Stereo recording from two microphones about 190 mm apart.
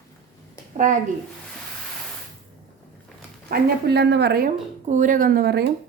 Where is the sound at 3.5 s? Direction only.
60° right (ahead or behind).